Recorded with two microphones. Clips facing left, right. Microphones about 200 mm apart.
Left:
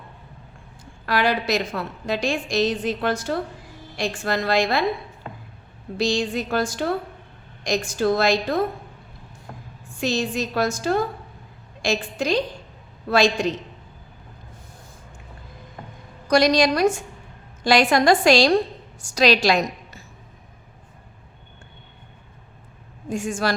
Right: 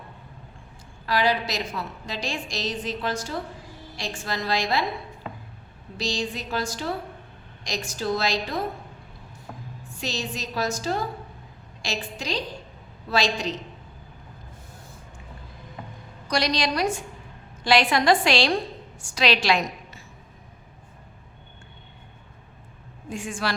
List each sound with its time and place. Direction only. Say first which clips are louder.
1.0 s a woman's voice: left 2 dB; 60° left (ahead or behind)
5.2 s a sound: even; centre (ahead or behind)
6.0 s a woman's voice: left 6 dB; 55° left (ahead or behind)
9.5 s a sound: even; centre (ahead or behind)
10.0 s a woman's voice: left 8 dB; 55° left (ahead or behind)
16.3 s a woman's voice: left 8 dB; 50° left (ahead or behind)
23.0 s a woman's voice: left 5 dB; 45° left (ahead or behind)